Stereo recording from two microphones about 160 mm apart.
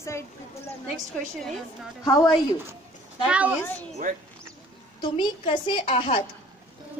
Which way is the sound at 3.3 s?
10° right (ahead or behind).